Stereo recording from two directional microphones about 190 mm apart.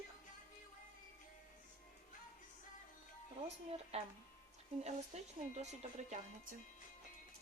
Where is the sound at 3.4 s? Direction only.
35° right (ahead or behind).